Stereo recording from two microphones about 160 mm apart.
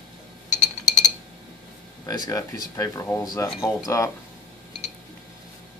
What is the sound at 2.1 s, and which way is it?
Speech, 20° left (ahead or behind).